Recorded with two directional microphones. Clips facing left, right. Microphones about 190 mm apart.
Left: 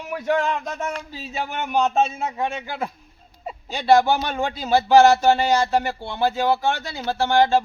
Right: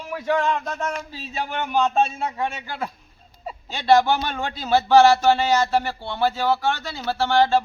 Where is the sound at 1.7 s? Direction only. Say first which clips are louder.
Left 1 dB; 15° left (ahead or behind).